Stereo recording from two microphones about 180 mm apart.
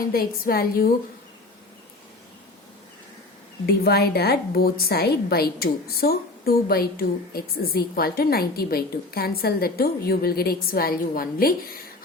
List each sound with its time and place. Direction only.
0.0 s a woman's voice: 55° left (ahead or behind)
3.7 s a woman's voice: 60° left (ahead or behind)